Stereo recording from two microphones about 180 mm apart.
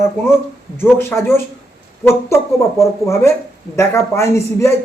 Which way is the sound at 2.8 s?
15° left (ahead or behind).